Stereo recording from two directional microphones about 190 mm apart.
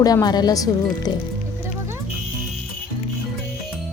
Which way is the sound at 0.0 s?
20° left (ahead or behind).